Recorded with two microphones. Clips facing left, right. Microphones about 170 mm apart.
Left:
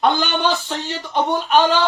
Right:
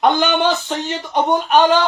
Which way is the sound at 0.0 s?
20° right (ahead or behind).